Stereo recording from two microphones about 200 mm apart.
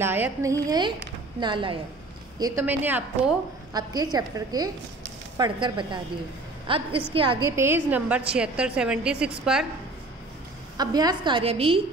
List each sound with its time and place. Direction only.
0.0 s a woman's voice: 10° right (ahead or behind)
3.7 s a woman's voice: 20° right (ahead or behind)
7.5 s a woman's voice: 10° right (ahead or behind)
10.8 s a woman's voice: 20° right (ahead or behind)